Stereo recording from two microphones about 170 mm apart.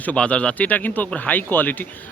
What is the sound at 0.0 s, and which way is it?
Speech, 10° left (ahead or behind).